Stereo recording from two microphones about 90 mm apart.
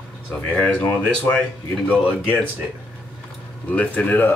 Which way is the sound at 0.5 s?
15° left (ahead or behind).